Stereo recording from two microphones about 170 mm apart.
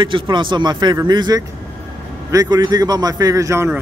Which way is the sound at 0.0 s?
30° right (ahead or behind).